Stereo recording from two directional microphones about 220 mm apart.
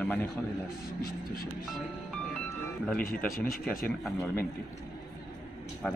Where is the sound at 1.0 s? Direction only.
40° left (ahead or behind).